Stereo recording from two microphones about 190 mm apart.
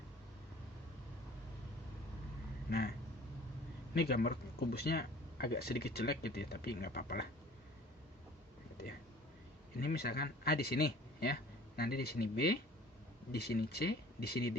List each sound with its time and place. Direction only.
2.6 s a sound: 55° left (ahead or behind)
3.9 s speech: 55° left (ahead or behind)
9.8 s speech: 55° left (ahead or behind)